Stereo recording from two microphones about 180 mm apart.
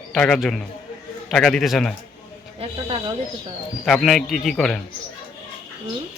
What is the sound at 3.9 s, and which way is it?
Speech, centre (ahead or behind).